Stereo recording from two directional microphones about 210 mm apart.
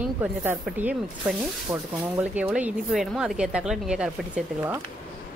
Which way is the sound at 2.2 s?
5° right (ahead or behind).